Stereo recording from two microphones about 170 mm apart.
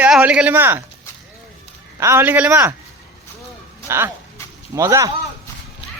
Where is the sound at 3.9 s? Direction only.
15° right (ahead or behind).